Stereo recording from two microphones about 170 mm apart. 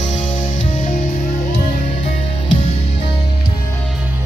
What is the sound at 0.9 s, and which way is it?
Music, 50° left (ahead or behind).